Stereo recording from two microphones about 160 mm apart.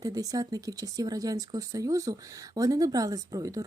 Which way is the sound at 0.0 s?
20° right (ahead or behind).